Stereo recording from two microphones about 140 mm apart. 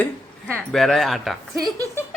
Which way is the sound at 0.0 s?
5° left (ahead or behind).